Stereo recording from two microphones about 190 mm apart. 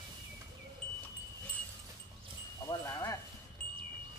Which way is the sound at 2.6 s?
15° left (ahead or behind).